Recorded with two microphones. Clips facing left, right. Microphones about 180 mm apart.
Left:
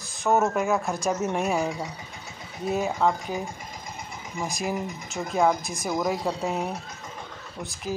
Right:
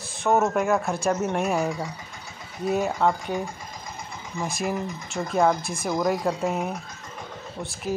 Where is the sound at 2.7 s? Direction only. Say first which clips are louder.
Right 1 dB; centre (ahead or behind).